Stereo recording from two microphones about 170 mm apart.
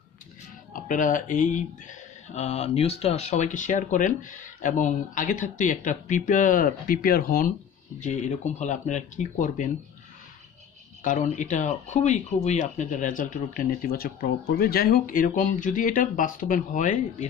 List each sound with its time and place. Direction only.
0.7 s speech: 50° left (ahead or behind)
8.0 s speech: 45° left (ahead or behind)
11.1 s speech: 45° left (ahead or behind)